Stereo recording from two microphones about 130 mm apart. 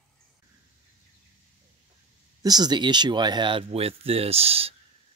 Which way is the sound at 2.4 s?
30° right (ahead or behind).